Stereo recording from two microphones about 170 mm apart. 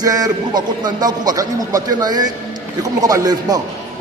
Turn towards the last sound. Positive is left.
turn(degrees=-20)  # may be behind; listen again after turning